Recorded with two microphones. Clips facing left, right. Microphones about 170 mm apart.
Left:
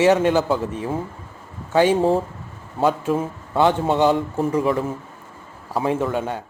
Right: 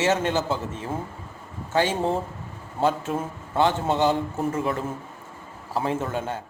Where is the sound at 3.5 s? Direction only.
15° left (ahead or behind).